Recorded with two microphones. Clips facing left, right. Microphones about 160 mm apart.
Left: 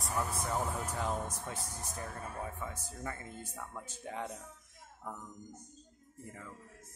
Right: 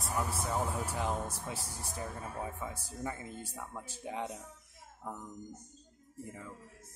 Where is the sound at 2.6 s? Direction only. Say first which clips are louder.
Right 2 dB; 15° right (ahead or behind).